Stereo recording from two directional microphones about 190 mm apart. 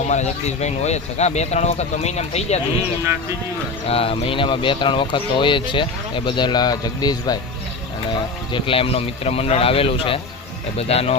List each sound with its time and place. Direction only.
0.1 s speech: 35° left (ahead or behind)
3.8 s speech: 30° left (ahead or behind)
8.5 s speech: 30° left (ahead or behind)